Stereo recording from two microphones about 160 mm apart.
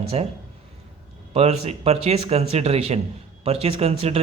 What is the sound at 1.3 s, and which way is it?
A man's voice, 40° right (ahead or behind).